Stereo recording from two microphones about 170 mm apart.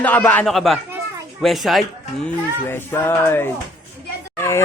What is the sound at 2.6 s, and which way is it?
A child's voice, 15° left (ahead or behind).